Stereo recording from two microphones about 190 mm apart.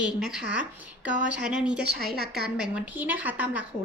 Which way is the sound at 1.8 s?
55° right (ahead or behind).